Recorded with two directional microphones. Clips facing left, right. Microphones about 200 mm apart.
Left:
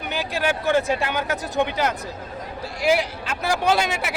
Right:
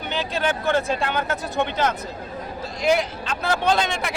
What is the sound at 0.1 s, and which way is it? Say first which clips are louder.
Speech: even; 10° left (ahead or behind).